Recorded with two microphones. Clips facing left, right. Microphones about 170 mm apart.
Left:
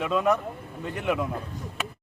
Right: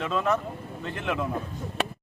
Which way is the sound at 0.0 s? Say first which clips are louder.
Left 2 dB; 10° left (ahead or behind).